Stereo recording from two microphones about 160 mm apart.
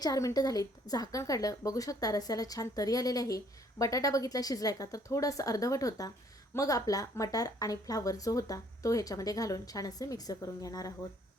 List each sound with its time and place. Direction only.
0.0 s a woman's voice: 20° left (ahead or behind)